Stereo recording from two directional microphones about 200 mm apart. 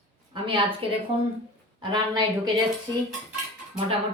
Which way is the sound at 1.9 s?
20° right (ahead or behind).